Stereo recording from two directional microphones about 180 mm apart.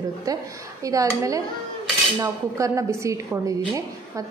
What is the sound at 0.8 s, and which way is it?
A woman's voice, 20° right (ahead or behind).